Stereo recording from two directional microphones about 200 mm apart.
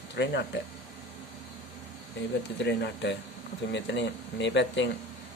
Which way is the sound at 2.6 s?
60° left (ahead or behind).